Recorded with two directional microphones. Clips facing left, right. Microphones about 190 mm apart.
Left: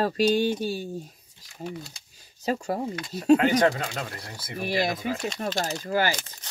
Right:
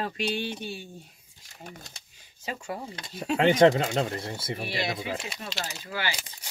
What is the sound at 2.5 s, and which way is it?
Speech, 40° left (ahead or behind).